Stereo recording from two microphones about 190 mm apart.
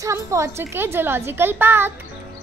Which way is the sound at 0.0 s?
15° right (ahead or behind).